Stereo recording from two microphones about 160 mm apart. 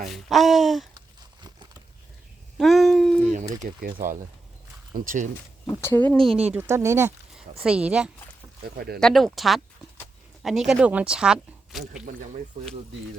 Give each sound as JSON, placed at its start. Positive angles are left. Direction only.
{"t": 0.1, "sound": "speech", "side_deg": 0}
{"t": 2.6, "sound": "a sound", "side_deg": 0}
{"t": 3.6, "sound": "speech", "side_deg": -65}
{"t": 4.9, "sound": "speech", "side_deg": -55}
{"t": 5.6, "sound": "speech", "side_deg": 15}
{"t": 6.5, "sound": "speech", "side_deg": -15}
{"t": 7.6, "sound": "speech", "side_deg": -5}
{"t": 8.6, "sound": "speech", "side_deg": -75}
{"t": 9.0, "sound": "speech", "side_deg": 5}